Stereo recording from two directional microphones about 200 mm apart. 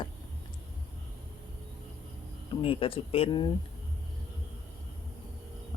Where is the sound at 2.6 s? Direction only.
25° left (ahead or behind).